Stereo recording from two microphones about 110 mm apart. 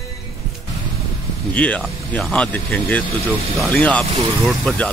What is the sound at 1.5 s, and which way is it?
Speech, 10° left (ahead or behind).